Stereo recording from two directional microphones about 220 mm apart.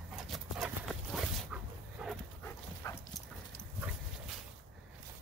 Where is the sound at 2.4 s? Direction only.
10° left (ahead or behind).